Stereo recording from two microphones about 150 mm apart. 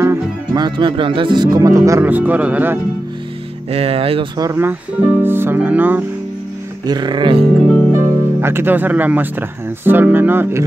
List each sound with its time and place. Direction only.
0.0 s speech: 25° right (ahead or behind)
1.9 s speech: 15° right (ahead or behind)
3.7 s speech: 40° right (ahead or behind)
4.4 s speech: 20° right (ahead or behind)
6.9 s speech: 30° right (ahead or behind)
8.0 s speech: 15° right (ahead or behind)